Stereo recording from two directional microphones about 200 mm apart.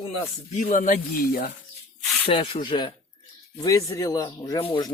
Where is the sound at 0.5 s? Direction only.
40° left (ahead or behind).